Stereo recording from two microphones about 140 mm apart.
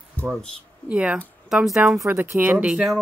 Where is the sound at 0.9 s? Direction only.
10° right (ahead or behind).